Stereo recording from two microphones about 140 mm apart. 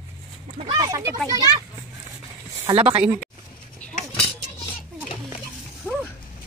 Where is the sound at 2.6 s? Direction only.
40° right (ahead or behind).